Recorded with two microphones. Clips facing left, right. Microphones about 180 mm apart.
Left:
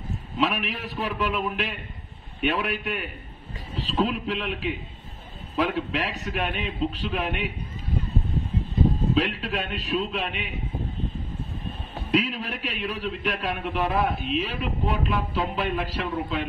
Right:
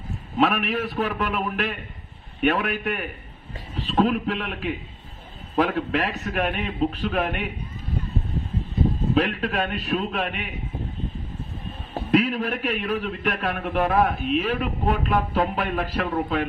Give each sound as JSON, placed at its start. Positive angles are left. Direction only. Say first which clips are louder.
{"t": 0.4, "sound": "a man's voice", "louder": "right 5 dB", "side_deg": -50}
{"t": 9.1, "sound": "a man's voice", "louder": "right 3 dB", "side_deg": -50}
{"t": 12.1, "sound": "a man's voice", "louder": "right 4 dB", "side_deg": -50}